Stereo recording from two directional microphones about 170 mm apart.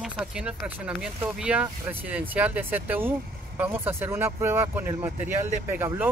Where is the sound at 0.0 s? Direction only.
5° right (ahead or behind).